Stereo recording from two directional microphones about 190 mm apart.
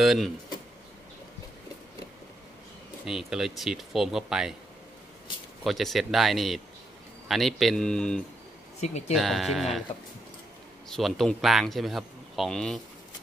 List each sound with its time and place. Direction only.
0.0 s speech: centre (ahead or behind)
3.1 s speech: centre (ahead or behind)
5.6 s speech: centre (ahead or behind)
8.8 s speech: 35° left (ahead or behind)
9.1 s speech: centre (ahead or behind)
10.9 s speech: centre (ahead or behind)